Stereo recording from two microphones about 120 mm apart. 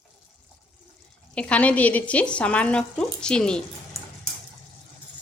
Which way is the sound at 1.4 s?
10° left (ahead or behind).